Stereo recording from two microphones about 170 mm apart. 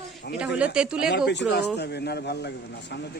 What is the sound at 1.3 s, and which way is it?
A man's voice, 90° left.